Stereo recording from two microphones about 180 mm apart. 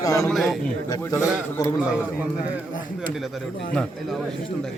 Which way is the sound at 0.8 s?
20° left (ahead or behind).